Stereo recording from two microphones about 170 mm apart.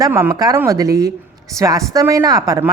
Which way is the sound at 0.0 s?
15° right (ahead or behind).